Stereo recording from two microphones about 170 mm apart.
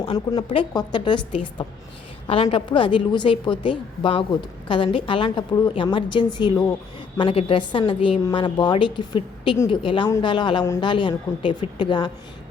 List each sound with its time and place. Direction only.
0.0 s a woman's voice: 25° left (ahead or behind)